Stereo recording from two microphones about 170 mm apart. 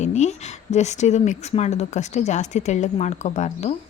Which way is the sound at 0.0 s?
45° left (ahead or behind).